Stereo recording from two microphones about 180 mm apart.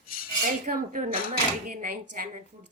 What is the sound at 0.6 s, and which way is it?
Speech, 45° right (ahead or behind).